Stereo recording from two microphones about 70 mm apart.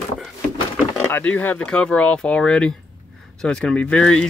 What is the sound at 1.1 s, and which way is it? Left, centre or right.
Speech, left.